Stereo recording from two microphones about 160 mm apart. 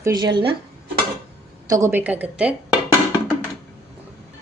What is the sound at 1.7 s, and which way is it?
Speech, 15° right (ahead or behind).